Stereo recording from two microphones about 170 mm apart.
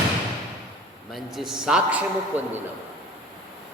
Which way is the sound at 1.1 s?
Centre (ahead or behind).